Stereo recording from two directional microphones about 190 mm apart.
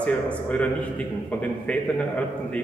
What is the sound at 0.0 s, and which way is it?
A man's voice, 5° left (ahead or behind).